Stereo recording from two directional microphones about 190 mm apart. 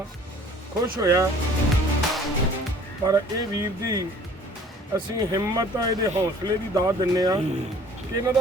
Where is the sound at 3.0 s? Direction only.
20° right (ahead or behind).